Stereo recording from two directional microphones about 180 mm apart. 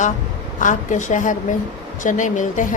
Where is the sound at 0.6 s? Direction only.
45° left (ahead or behind).